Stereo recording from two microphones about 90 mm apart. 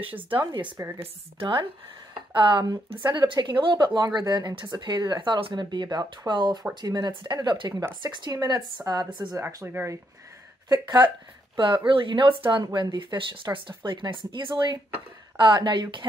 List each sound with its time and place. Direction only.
0.0 s a woman's voice: 75° right (ahead or behind)
0.5 s speech: 65° right (ahead or behind)
0.9 s a woman's voice: 80° right
2.3 s speech: 65° right (ahead or behind)
9.3 s speech: 30° right (ahead or behind)
10.7 s speech: 45° right (ahead or behind)
11.5 s speech: 60° right (ahead or behind)
12.6 s speech: 50° right (ahead or behind)